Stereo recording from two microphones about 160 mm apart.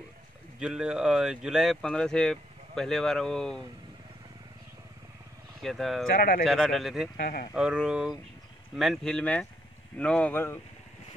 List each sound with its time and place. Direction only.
0.6 s speech: 5° right (ahead or behind)
5.6 s speech: centre (ahead or behind)
6.1 s speech: 65° left (ahead or behind)
6.4 s speech: centre (ahead or behind)
7.2 s speech: 65° left (ahead or behind)
7.5 s speech: 5° right (ahead or behind); by 10.6 s 15° left (ahead or behind)